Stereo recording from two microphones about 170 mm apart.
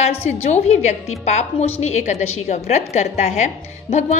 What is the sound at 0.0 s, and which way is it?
A woman's voice, 40° left (ahead or behind).